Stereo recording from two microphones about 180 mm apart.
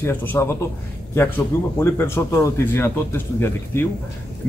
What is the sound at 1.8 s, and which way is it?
A man's voice, 15° left (ahead or behind).